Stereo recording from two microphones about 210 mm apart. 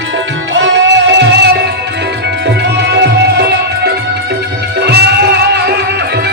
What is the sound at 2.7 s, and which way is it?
Music, 55° right (ahead or behind).